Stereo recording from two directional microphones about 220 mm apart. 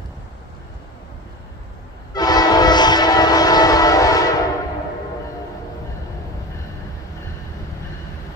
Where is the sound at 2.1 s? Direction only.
15° left (ahead or behind).